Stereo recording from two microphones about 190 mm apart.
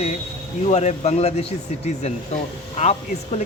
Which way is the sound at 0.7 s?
35° left (ahead or behind).